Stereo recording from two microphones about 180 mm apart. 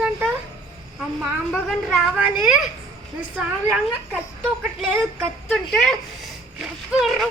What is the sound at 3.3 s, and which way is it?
Speech, 5° right (ahead or behind).